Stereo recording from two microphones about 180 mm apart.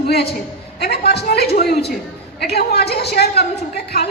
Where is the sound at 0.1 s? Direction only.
65° left (ahead or behind).